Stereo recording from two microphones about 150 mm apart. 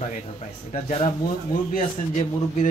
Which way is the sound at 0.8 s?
40° left (ahead or behind).